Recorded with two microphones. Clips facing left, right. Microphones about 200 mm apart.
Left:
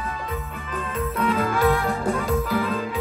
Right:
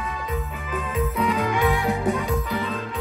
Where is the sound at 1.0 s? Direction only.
Centre (ahead or behind).